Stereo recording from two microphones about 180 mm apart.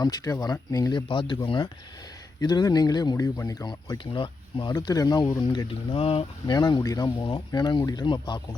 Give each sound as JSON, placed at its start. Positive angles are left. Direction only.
{"t": 0.0, "sound": "speech", "side_deg": 20}